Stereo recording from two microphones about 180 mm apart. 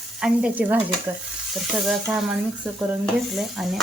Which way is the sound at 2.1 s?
5° right (ahead or behind).